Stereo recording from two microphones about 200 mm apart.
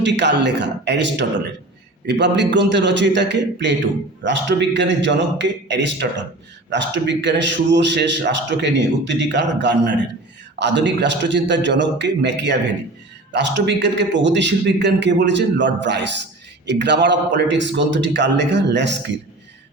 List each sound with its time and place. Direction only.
0.0 s a man's voice: 60° right (ahead or behind)